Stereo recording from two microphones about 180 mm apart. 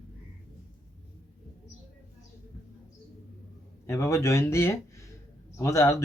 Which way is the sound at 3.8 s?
15° left (ahead or behind).